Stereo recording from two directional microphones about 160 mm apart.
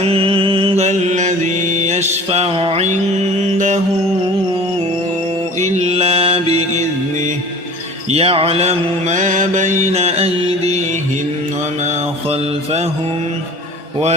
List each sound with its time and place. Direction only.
0.0 s mantra: 35° right (ahead or behind)
5.6 s mantra: 45° right (ahead or behind)
8.1 s mantra: 35° right (ahead or behind)